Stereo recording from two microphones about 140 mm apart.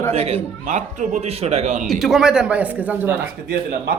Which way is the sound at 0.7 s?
60° right (ahead or behind).